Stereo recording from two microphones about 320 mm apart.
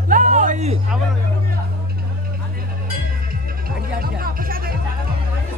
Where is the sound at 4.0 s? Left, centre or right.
Right.